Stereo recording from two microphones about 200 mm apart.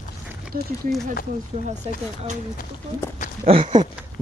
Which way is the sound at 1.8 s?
30° right (ahead or behind).